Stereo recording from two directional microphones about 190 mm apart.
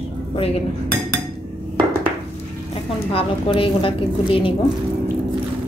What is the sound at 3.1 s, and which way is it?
Speech, 30° left (ahead or behind).